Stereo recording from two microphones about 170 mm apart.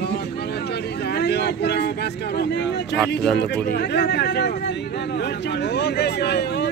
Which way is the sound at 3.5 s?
70° left (ahead or behind).